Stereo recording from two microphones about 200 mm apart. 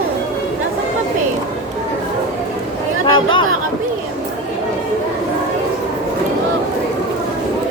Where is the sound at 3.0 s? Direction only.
25° left (ahead or behind).